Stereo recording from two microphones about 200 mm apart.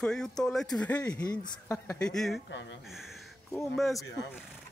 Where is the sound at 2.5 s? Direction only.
65° left (ahead or behind).